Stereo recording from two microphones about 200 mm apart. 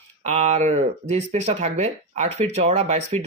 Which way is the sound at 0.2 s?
35° right (ahead or behind).